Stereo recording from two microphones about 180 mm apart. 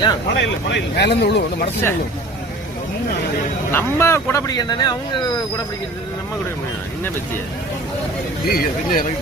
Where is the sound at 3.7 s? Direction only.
15° left (ahead or behind).